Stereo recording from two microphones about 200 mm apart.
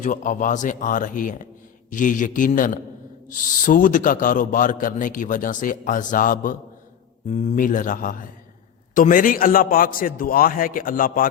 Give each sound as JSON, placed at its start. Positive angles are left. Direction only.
{"t": 0.0, "sound": "a man's voice", "side_deg": 40}